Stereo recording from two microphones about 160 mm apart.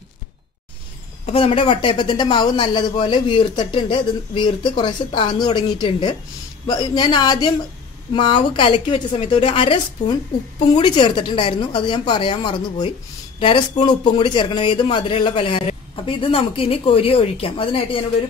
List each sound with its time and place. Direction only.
1.2 s speech: 35° left (ahead or behind)